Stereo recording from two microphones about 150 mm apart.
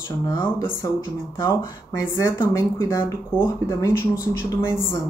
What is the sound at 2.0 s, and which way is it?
A woman's voice, 15° left (ahead or behind).